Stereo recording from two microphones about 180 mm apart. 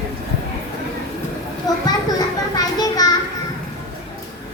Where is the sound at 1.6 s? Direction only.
20° left (ahead or behind).